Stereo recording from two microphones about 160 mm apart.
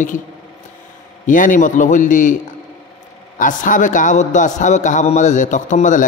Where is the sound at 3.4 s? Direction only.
55° left (ahead or behind).